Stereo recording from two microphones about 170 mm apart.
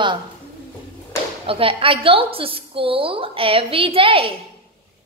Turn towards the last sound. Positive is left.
turn(degrees=-30)  # may be behind; listen again after turning